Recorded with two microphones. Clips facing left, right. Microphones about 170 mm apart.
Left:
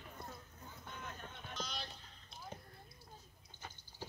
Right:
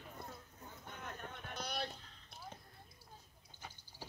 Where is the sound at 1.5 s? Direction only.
65° right (ahead or behind).